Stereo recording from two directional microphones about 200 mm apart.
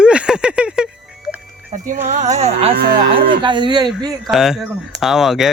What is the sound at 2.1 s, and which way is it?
Speech, 35° right (ahead or behind).